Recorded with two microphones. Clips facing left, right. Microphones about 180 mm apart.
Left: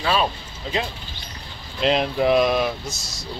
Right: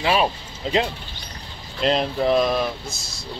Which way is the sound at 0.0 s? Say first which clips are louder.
Right 2 dB; 15° right (ahead or behind).